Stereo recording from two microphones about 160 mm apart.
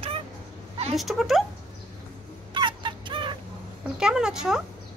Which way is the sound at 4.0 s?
5° right (ahead or behind).